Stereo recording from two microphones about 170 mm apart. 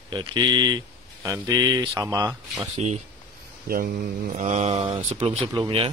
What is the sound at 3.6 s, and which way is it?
Speech, 60° right (ahead or behind).